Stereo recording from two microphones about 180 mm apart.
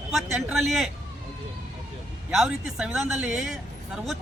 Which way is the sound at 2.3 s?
5° right (ahead or behind).